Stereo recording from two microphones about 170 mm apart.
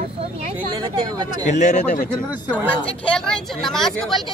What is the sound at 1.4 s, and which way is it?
Speech, 45° left (ahead or behind).